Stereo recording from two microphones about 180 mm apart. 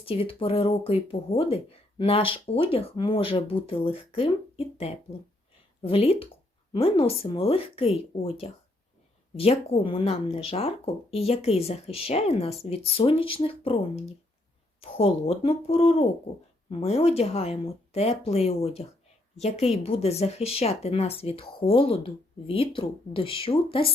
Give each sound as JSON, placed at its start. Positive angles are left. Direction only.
{"t": 0.0, "sound": "speech", "side_deg": 30}